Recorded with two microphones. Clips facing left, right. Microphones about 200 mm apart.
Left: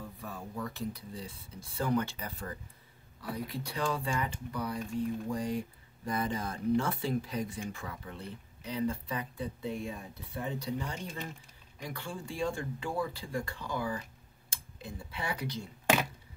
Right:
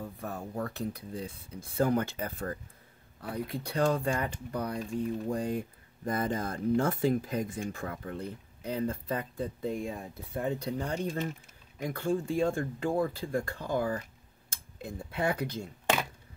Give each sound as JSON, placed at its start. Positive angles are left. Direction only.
{"t": 0.0, "sound": "speech", "side_deg": -50}
{"t": 11.8, "sound": "speech", "side_deg": -45}